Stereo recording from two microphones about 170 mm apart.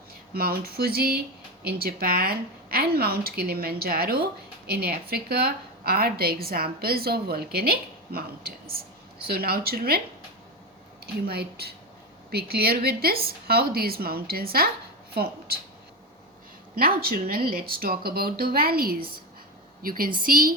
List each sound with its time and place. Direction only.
0.3 s a woman's voice: 65° right (ahead or behind)
11.0 s a woman's voice: 65° right (ahead or behind)
16.7 s a woman's voice: 60° right (ahead or behind)